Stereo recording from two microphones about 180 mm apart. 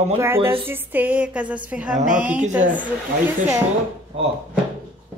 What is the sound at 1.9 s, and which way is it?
Speech, 45° right (ahead or behind).